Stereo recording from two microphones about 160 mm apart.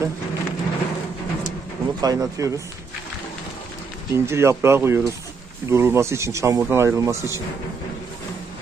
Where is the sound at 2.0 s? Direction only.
20° right (ahead or behind).